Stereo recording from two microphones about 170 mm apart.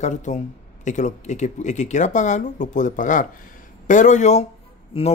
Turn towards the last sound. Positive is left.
turn(degrees=30)  # may be behind; listen again after turning